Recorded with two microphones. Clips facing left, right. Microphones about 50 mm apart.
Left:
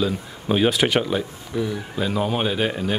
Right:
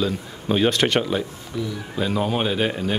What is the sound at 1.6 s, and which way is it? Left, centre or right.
Speech, left.